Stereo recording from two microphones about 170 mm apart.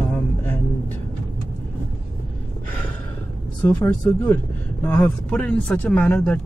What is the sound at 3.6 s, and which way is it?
Speech, 10° left (ahead or behind).